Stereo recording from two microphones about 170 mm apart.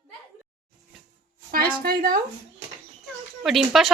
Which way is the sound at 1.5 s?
60° right (ahead or behind).